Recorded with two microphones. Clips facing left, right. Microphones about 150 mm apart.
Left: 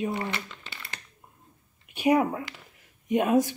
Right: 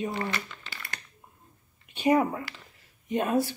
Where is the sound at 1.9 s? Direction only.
10° left (ahead or behind).